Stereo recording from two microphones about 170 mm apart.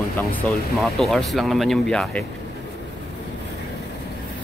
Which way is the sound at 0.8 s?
Centre (ahead or behind).